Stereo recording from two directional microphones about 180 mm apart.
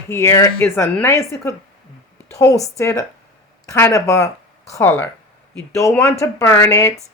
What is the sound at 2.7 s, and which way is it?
Speech, 15° left (ahead or behind).